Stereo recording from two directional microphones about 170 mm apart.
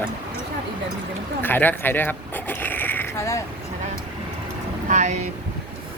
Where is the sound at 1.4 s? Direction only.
10° left (ahead or behind).